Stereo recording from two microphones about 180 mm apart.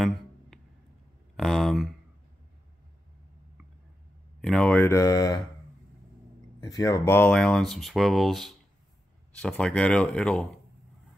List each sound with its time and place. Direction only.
0.5 s a sound: centre (ahead or behind)
4.4 s speech: 5° left (ahead or behind)
6.6 s speech: 20° left (ahead or behind); by 10.4 s 5° left (ahead or behind)